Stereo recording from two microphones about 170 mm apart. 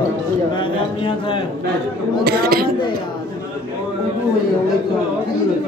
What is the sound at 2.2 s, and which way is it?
Speech, 65° right (ahead or behind).